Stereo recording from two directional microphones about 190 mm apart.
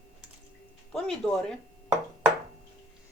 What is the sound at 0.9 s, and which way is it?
Speech, 5° left (ahead or behind).